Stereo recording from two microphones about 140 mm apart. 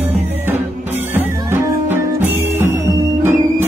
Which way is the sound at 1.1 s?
15° right (ahead or behind).